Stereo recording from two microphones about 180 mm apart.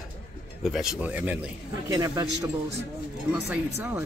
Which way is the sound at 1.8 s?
20° right (ahead or behind).